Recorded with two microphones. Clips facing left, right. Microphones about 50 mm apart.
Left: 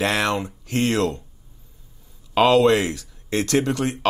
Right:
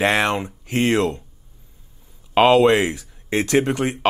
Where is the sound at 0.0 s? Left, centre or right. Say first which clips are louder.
Right 3 dB; right.